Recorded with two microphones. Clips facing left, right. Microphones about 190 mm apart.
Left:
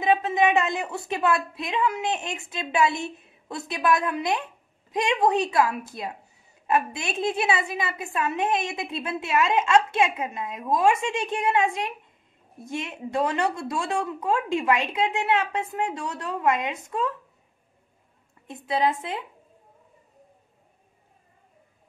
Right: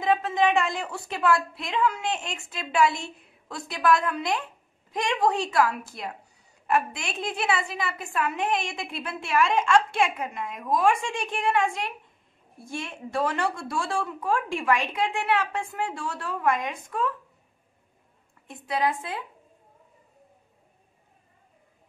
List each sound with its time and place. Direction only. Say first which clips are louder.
0.0 s a woman's voice: left 2 dB; 20° left (ahead or behind)
18.7 s a woman's voice: left 2 dB; 20° left (ahead or behind)